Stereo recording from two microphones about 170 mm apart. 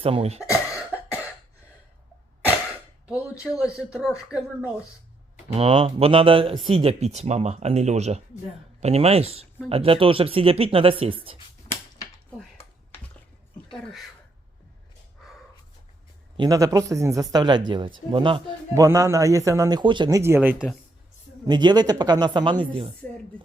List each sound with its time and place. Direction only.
0.0 s speech: 35° right (ahead or behind)
0.5 s cough: 15° left (ahead or behind)
3.1 s speech: 5° right (ahead or behind)
5.5 s speech: 35° right (ahead or behind)
16.4 s speech: 20° right (ahead or behind)
18.7 s speech: 20° right (ahead or behind)
21.4 s speech: 25° right (ahead or behind)